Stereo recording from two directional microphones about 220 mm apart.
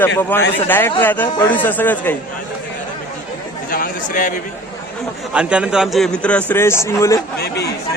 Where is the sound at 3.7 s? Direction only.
40° left (ahead or behind).